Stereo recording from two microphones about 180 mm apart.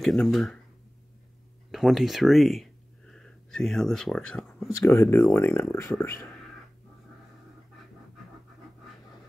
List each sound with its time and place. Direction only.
0.0 s speech: centre (ahead or behind)
1.7 s speech: centre (ahead or behind)
4.6 s speech: 15° left (ahead or behind)